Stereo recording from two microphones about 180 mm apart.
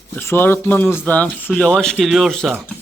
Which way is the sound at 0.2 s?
10° left (ahead or behind).